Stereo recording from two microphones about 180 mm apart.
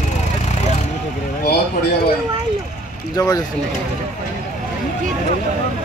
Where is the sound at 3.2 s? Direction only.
20° left (ahead or behind).